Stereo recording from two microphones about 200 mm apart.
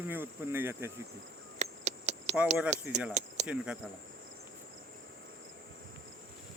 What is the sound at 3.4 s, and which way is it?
Speech, 5° right (ahead or behind).